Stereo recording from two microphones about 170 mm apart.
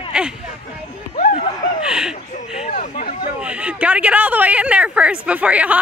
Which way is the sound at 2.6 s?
40° left (ahead or behind).